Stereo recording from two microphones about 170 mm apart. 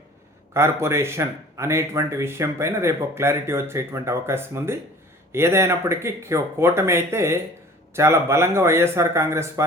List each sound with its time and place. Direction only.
0.5 s speech: 15° right (ahead or behind)